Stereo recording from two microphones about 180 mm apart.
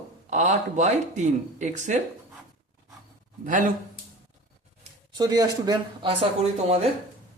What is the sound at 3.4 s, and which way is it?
Speech, 45° right (ahead or behind).